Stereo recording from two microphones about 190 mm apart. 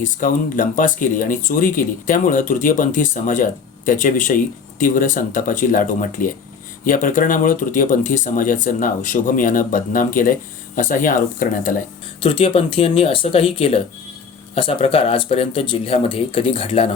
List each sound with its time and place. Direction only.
0.0 s speech: 45° left (ahead or behind)
12.2 s speech: 30° left (ahead or behind)